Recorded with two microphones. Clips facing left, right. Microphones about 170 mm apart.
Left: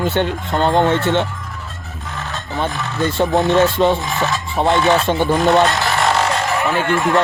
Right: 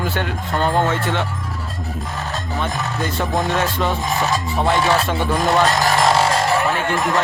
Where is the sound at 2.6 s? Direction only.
30° left (ahead or behind).